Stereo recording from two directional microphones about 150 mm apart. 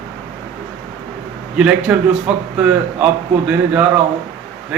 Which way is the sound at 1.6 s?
5° right (ahead or behind).